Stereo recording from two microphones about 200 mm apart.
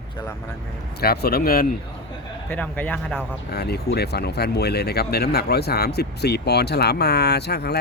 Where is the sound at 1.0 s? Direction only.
50° left (ahead or behind).